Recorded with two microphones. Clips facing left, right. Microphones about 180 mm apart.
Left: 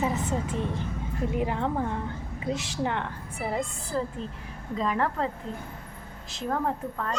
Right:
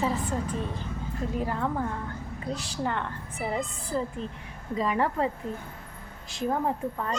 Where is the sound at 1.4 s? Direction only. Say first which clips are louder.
Left 1 dB; 15° left (ahead or behind).